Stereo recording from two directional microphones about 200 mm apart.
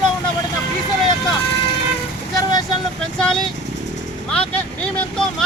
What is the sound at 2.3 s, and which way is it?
Vehicle, 20° left (ahead or behind).